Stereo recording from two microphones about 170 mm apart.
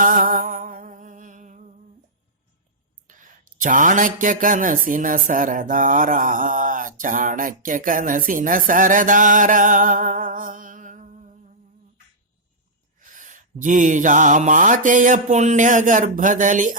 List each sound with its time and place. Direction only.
0.0 s music: 55° right (ahead or behind)
3.1 s a sound: 50° right (ahead or behind)
3.6 s speech: 50° right (ahead or behind)
13.1 s speech: 50° right (ahead or behind)